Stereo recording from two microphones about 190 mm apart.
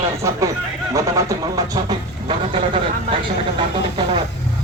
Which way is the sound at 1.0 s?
15° right (ahead or behind).